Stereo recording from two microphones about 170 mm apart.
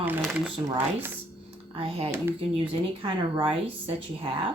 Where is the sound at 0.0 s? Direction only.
10° right (ahead or behind).